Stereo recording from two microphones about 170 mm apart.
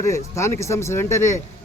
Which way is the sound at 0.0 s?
15° left (ahead or behind).